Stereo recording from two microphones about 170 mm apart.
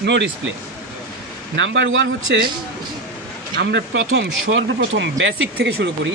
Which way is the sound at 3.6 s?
90° right.